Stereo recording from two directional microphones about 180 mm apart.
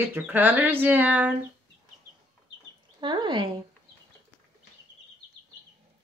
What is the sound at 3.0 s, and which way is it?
Speech, 25° right (ahead or behind).